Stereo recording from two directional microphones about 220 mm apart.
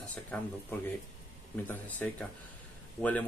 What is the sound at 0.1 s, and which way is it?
Speech, 5° left (ahead or behind).